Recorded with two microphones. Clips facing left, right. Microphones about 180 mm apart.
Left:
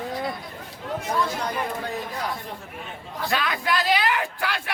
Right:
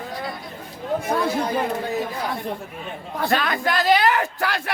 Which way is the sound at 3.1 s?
50° right (ahead or behind).